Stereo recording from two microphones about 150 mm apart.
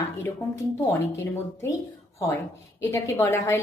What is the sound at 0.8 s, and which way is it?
A woman's voice, 15° left (ahead or behind).